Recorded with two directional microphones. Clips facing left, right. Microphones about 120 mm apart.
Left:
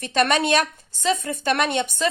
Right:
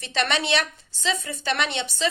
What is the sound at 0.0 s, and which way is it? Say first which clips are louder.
A woman's voice: left 5 dB; 50° left (ahead or behind).